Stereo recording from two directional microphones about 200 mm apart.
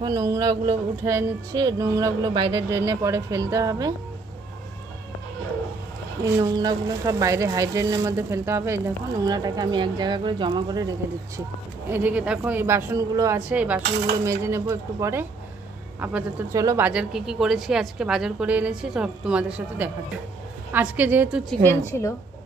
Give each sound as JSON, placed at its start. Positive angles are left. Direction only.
{"t": 0.0, "sound": "speech", "side_deg": -15}
{"t": 6.2, "sound": "speech", "side_deg": -20}
{"t": 11.9, "sound": "a woman's voice", "side_deg": -10}
{"t": 21.5, "sound": "a woman's voice", "side_deg": 10}